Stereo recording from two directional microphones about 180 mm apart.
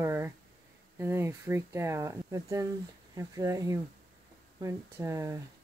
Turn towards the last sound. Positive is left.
turn(degrees=-15)  # may be behind; listen again after turning